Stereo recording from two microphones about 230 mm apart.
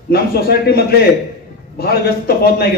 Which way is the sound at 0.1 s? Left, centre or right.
Left.